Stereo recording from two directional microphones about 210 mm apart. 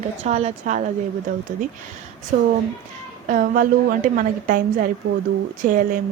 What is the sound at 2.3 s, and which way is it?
A woman's voice, 40° right (ahead or behind).